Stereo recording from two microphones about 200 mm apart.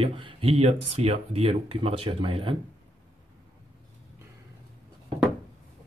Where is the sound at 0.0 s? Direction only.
30° right (ahead or behind).